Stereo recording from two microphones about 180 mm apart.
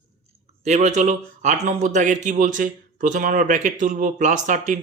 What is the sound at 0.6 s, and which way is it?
Speech, 40° right (ahead or behind).